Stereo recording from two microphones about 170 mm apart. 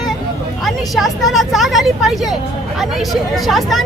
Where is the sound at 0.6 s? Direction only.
Centre (ahead or behind).